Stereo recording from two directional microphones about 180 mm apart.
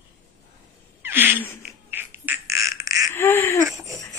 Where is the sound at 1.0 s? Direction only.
10° right (ahead or behind).